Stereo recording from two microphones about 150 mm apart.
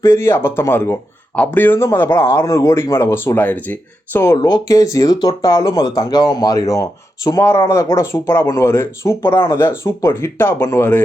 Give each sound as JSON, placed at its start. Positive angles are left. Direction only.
{"t": 0.0, "sound": "speech", "side_deg": 15}